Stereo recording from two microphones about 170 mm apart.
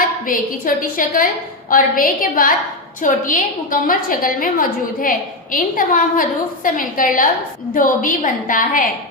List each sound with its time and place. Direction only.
0.3 s a woman's voice: 55° left (ahead or behind)